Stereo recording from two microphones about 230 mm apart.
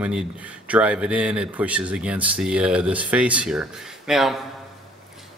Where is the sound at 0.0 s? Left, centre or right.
Centre.